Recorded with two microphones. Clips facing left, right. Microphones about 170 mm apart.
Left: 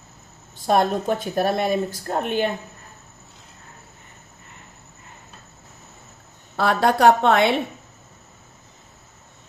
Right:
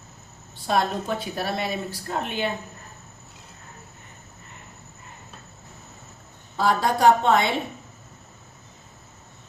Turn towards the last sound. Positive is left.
turn(degrees=65)  # may be behind; listen again after turning